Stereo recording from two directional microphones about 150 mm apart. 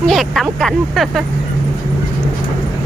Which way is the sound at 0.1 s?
Centre (ahead or behind).